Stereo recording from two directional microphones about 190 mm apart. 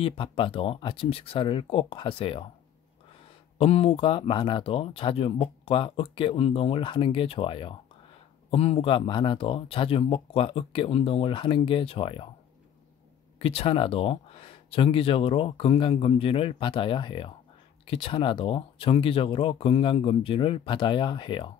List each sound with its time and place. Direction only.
0.0 s speech: 30° left (ahead or behind)
3.5 s speech: 30° left (ahead or behind)
13.4 s speech: 30° left (ahead or behind)